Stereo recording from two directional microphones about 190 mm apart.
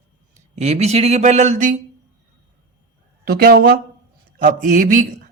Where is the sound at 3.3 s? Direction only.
55° right (ahead or behind).